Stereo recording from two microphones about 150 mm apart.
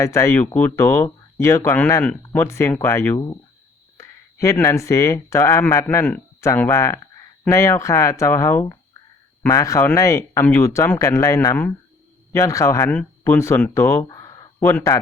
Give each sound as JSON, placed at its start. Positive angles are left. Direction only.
{"t": 0.0, "sound": "speech", "side_deg": 20}